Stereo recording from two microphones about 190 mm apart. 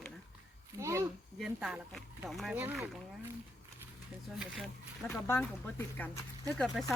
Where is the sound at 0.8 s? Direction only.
15° right (ahead or behind).